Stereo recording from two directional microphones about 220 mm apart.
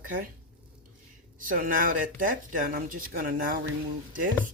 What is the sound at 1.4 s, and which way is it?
Speech, 40° right (ahead or behind).